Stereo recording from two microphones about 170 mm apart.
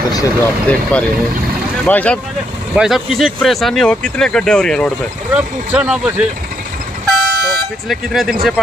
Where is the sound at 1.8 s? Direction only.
5° left (ahead or behind).